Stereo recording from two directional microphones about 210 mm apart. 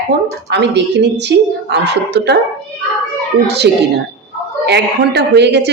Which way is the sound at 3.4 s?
50° right (ahead or behind).